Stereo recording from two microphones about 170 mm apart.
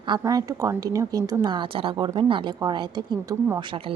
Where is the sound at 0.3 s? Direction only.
20° right (ahead or behind).